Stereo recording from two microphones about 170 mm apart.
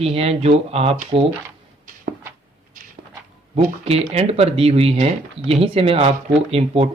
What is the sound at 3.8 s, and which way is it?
Speech, 35° right (ahead or behind).